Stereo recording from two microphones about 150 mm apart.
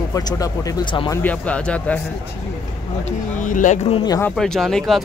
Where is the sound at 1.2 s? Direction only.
10° left (ahead or behind).